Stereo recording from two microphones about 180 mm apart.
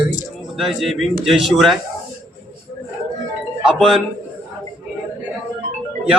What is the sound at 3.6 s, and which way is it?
Speech, centre (ahead or behind).